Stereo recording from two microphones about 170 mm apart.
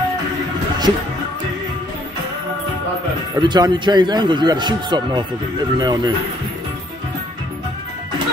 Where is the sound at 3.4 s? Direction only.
25° right (ahead or behind).